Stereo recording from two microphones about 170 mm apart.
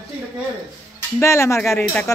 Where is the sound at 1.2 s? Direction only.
15° left (ahead or behind).